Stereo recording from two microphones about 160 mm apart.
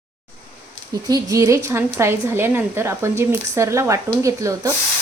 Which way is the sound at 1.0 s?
20° right (ahead or behind).